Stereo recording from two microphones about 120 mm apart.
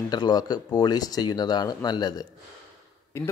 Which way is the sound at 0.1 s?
35° left (ahead or behind).